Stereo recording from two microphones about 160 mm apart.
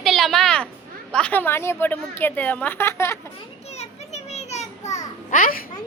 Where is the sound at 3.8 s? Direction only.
45° left (ahead or behind).